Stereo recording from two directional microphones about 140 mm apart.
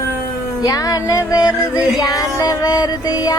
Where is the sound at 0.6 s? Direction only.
25° left (ahead or behind).